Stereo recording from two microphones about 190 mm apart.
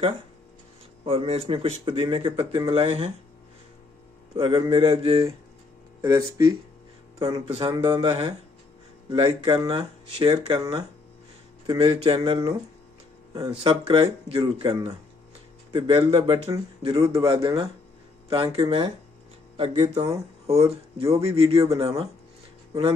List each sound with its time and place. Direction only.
1.0 s speech: 30° right (ahead or behind)
4.4 s speech: 25° right (ahead or behind)
5.9 s speech: 15° right (ahead or behind)
7.4 s speech: 30° right (ahead or behind)
11.6 s speech: 30° right (ahead or behind)